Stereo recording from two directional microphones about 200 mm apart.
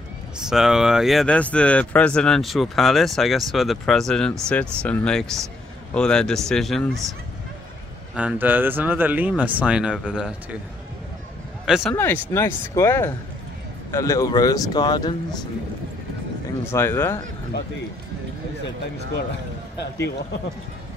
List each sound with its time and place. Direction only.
0.5 s speech: centre (ahead or behind)
8.2 s speech: 10° right (ahead or behind)
11.6 s speech: centre (ahead or behind)
11.9 s speech: 15° left (ahead or behind)
16.7 s speech: 15° left (ahead or behind)